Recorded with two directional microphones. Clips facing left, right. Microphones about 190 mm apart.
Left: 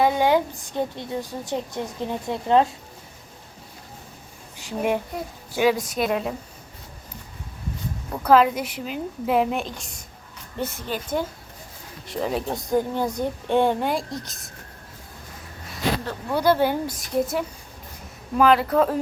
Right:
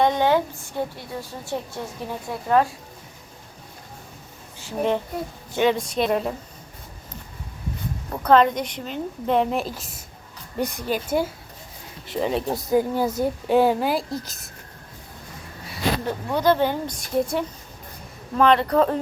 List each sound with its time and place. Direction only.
0.0 s a woman's voice: 10° left (ahead or behind)
4.5 s a sound: 15° left (ahead or behind)
5.5 s speech: 5° left (ahead or behind)
8.2 s speech: 5° left (ahead or behind)
10.6 s speech: 15° right (ahead or behind)
16.3 s speech: 10° left (ahead or behind)